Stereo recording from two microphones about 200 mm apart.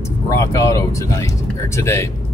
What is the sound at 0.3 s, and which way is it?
Speech, 15° left (ahead or behind).